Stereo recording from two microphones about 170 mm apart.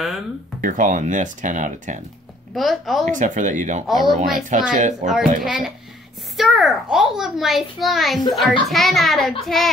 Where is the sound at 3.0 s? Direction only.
50° right (ahead or behind).